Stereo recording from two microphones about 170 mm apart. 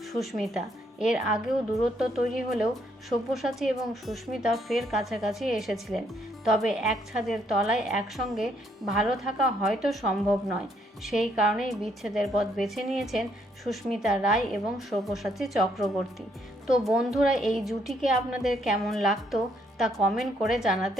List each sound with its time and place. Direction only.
0.1 s a woman's voice: centre (ahead or behind)